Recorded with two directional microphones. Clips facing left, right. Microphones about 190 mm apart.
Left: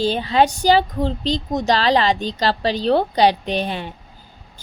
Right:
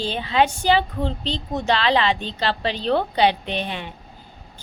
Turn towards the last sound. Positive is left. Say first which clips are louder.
# left 4 dB
turn(degrees=40)  # may be behind; listen again after turning